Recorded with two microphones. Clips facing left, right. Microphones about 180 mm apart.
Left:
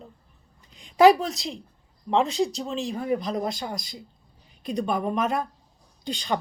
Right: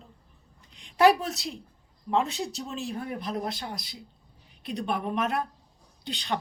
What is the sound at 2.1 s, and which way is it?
Speech, centre (ahead or behind).